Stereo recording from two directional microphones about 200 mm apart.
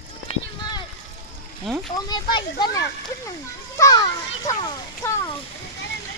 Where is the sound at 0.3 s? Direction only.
20° left (ahead or behind).